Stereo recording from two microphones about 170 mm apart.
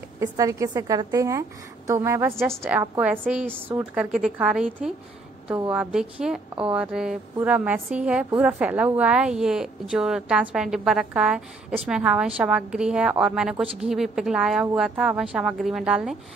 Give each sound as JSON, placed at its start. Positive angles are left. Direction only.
{"t": 0.2, "sound": "a woman's voice", "side_deg": -20}